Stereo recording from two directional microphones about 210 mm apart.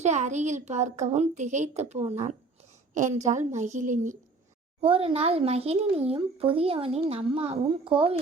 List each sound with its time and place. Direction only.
0.0 s a child's voice: 35° right (ahead or behind)